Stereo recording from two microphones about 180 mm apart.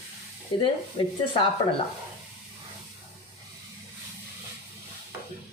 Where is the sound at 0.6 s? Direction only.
25° left (ahead or behind).